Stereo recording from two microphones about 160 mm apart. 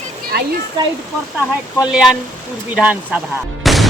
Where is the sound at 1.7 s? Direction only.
5° right (ahead or behind).